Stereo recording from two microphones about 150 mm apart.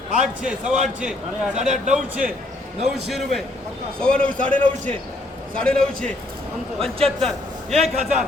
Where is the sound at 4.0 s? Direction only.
5° left (ahead or behind).